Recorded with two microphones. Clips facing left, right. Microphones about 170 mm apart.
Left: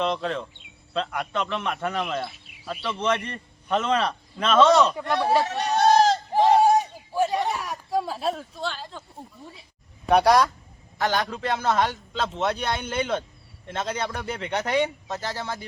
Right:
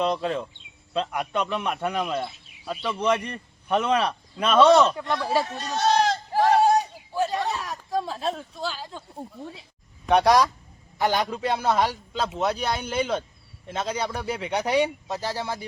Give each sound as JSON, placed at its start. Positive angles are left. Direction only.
{"t": 0.0, "sound": "a man's voice", "side_deg": -10}
{"t": 5.5, "sound": "speech", "side_deg": 65}
{"t": 6.3, "sound": "a sound", "side_deg": 20}
{"t": 10.1, "sound": "speech", "side_deg": 0}
{"t": 10.9, "sound": "a man's voice", "side_deg": -15}